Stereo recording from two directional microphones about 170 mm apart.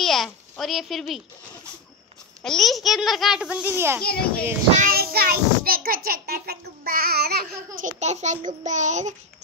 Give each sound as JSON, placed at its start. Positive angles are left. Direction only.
{"t": 0.0, "sound": "speech", "side_deg": 0}
{"t": 2.4, "sound": "a child's voice", "side_deg": 0}
{"t": 4.0, "sound": "a child's voice", "side_deg": 65}
{"t": 4.7, "sound": "a child's voice", "side_deg": -60}
{"t": 7.8, "sound": "a child's voice", "side_deg": -45}